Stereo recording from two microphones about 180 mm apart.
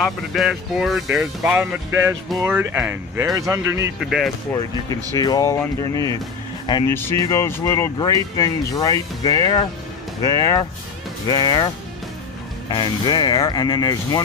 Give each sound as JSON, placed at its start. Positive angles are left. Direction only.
{"t": 0.0, "sound": "speech", "side_deg": 0}
{"t": 4.0, "sound": "speech", "side_deg": 0}
{"t": 4.5, "sound": "speech", "side_deg": 20}
{"t": 6.9, "sound": "speech", "side_deg": 15}